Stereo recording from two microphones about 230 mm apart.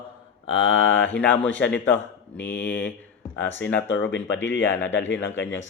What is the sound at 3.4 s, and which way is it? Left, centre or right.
Speech, centre.